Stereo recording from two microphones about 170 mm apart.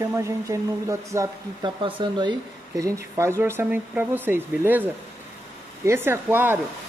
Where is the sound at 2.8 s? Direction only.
15° right (ahead or behind).